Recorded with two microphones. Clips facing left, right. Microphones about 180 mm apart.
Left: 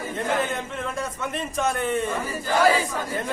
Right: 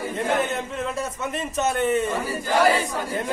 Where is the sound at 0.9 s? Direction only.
5° right (ahead or behind).